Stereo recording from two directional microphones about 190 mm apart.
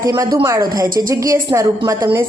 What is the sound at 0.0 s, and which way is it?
A woman's voice, 15° right (ahead or behind).